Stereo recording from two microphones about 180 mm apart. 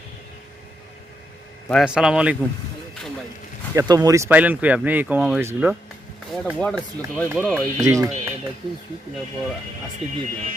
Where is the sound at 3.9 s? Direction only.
20° right (ahead or behind).